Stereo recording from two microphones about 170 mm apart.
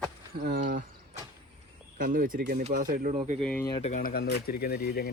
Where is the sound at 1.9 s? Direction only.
55° right (ahead or behind).